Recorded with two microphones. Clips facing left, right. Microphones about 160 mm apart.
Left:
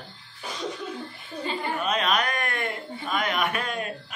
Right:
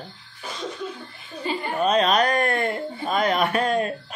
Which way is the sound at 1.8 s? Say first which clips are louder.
Right 8 dB; 35° right (ahead or behind).